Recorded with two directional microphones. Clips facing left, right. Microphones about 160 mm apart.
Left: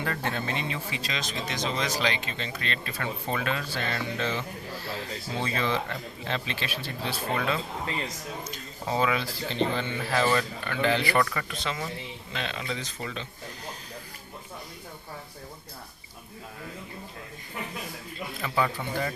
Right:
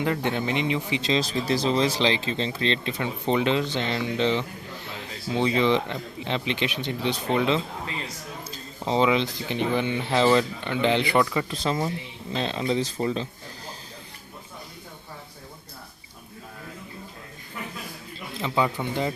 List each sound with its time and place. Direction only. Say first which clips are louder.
0.0 s speech: right 5 dB; 15° right (ahead or behind)
11.4 s speech: right 7 dB; 35° right (ahead or behind)
18.3 s speech: right 3 dB; 20° right (ahead or behind)